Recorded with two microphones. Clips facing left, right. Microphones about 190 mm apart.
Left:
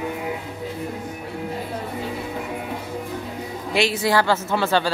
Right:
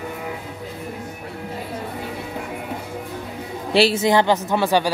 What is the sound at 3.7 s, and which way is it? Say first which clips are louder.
A woman's voice: right 4 dB; 30° right (ahead or behind).